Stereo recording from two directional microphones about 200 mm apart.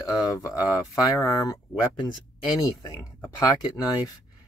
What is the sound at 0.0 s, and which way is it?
Speech, 15° left (ahead or behind).